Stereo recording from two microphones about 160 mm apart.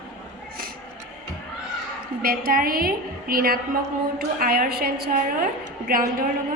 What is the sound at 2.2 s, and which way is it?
A woman's voice, 65° right (ahead or behind).